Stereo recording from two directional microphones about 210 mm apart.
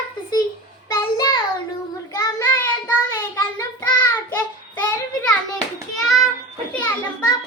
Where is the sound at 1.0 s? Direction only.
20° left (ahead or behind).